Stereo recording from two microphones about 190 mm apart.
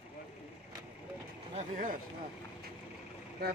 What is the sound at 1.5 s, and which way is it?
Speech, 45° right (ahead or behind).